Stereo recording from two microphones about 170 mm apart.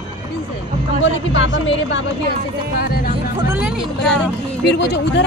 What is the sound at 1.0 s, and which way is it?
Speech, 90° left.